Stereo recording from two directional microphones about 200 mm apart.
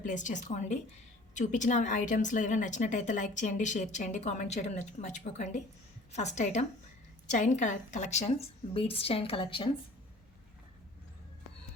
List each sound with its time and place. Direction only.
0.0 s a woman's voice: 40° left (ahead or behind)